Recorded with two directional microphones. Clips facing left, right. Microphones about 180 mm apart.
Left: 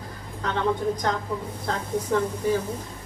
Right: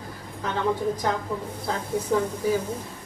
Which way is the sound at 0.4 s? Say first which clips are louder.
Even; 5° right (ahead or behind).